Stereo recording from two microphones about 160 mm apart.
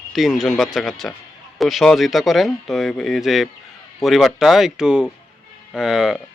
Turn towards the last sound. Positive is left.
turn(degrees=-5)  # may be behind; listen again after turning